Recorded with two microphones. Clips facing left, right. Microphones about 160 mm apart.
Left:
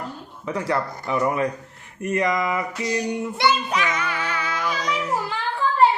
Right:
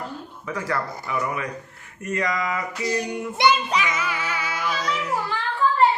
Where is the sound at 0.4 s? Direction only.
25° left (ahead or behind).